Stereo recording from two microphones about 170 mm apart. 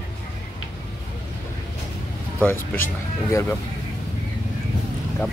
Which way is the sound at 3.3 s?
15° left (ahead or behind).